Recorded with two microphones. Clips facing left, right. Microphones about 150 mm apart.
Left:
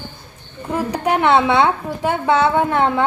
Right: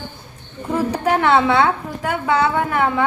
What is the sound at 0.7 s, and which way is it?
A woman's voice, 15° left (ahead or behind).